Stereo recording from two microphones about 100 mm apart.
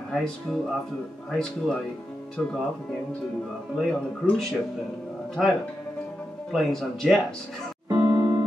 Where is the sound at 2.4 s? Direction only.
10° left (ahead or behind).